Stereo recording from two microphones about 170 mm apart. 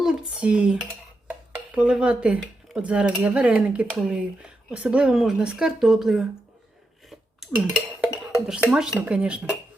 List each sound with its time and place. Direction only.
0.0 s dishes: 5° right (ahead or behind)
1.3 s speech: 5° right (ahead or behind)
8.0 s speech: 5° right (ahead or behind)